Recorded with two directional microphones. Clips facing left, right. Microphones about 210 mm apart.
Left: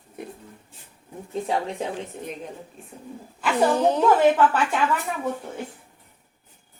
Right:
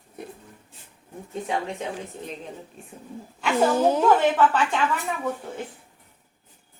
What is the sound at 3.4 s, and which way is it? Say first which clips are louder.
Speech: even; 5° right (ahead or behind).